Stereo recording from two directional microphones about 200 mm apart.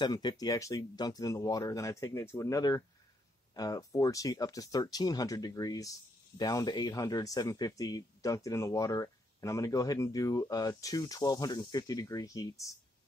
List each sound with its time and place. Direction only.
0.0 s speech: 20° left (ahead or behind)